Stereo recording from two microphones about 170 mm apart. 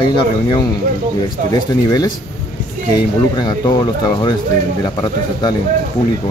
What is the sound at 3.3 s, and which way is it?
Speech, 25° left (ahead or behind).